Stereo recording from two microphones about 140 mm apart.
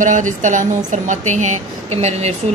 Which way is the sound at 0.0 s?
65° right (ahead or behind).